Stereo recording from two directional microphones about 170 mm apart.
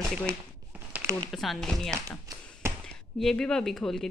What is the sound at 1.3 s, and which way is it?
Speech, centre (ahead or behind).